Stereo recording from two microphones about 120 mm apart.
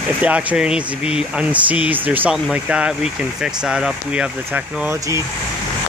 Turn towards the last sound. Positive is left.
turn(degrees=-25)  # may be behind; listen again after turning